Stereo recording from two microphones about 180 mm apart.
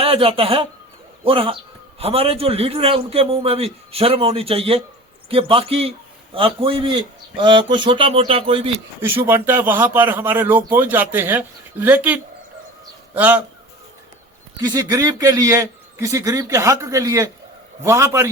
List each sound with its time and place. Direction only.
0.0 s a man's voice: 30° right (ahead or behind)
9.0 s a man's voice: 15° right (ahead or behind)
14.6 s a man's voice: 20° right (ahead or behind)